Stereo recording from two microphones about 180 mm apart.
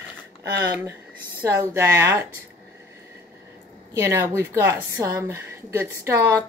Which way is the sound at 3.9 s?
15° right (ahead or behind).